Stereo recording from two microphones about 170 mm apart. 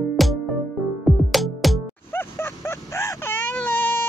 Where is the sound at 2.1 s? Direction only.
15° left (ahead or behind).